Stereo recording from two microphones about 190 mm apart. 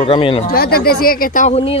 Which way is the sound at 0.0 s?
30° left (ahead or behind).